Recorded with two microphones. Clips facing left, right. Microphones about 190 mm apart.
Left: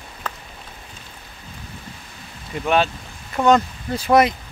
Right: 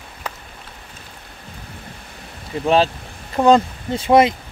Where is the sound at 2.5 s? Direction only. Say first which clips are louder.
Right 3 dB; 30° right (ahead or behind).